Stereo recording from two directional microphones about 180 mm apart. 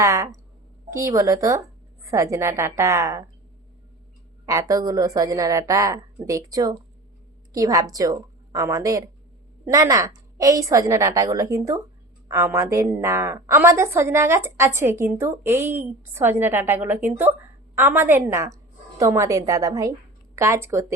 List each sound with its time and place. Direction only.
0.0 s a woman's voice: 20° right (ahead or behind)
4.7 s a woman's voice: 20° right (ahead or behind)